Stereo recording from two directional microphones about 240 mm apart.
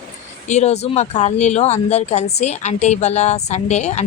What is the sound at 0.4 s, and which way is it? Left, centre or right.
Speech, left.